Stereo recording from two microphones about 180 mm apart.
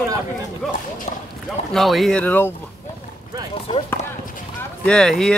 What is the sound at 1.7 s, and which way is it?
Speech, centre (ahead or behind).